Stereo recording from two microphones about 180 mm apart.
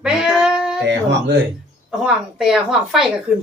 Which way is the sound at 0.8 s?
70° right (ahead or behind).